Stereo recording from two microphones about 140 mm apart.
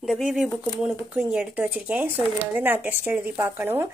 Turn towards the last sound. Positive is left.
turn(degrees=-15)  # may be behind; listen again after turning